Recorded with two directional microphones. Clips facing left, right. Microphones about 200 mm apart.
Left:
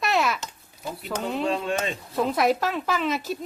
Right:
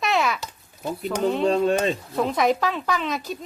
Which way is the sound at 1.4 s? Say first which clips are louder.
Right 7 dB; 40° right (ahead or behind).